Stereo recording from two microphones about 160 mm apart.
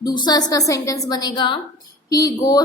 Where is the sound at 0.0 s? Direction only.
25° left (ahead or behind).